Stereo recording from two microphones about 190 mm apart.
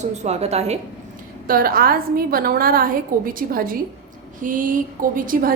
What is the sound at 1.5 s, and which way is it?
A woman's voice, 50° right (ahead or behind).